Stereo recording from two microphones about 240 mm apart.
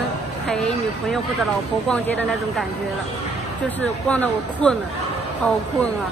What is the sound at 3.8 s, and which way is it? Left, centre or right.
Speech, centre.